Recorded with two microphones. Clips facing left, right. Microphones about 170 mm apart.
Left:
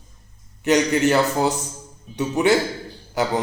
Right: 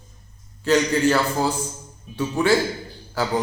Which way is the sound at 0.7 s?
20° left (ahead or behind).